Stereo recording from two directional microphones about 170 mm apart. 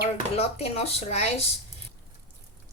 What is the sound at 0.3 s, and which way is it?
Speech, 35° left (ahead or behind).